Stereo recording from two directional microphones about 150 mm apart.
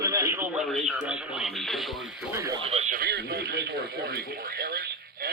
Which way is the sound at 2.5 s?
40° right (ahead or behind).